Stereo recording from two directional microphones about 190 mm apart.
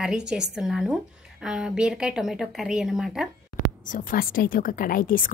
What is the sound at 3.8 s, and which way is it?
A woman's voice, 45° left (ahead or behind).